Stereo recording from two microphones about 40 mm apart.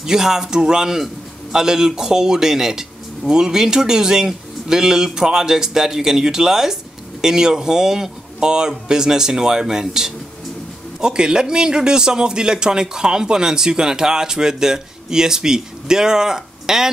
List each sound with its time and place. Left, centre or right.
0.0 s a man's voice: centre